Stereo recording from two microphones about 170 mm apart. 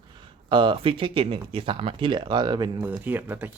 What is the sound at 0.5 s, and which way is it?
Speech, 30° right (ahead or behind).